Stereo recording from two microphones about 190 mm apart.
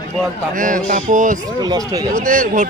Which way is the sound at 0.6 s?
45° right (ahead or behind).